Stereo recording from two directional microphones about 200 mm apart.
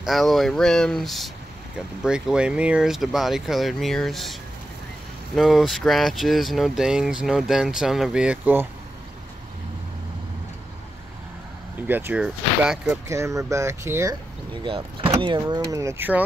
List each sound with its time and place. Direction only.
0.0 s speech: centre (ahead or behind)
11.9 s speech: 10° right (ahead or behind)
14.6 s speech: 25° right (ahead or behind)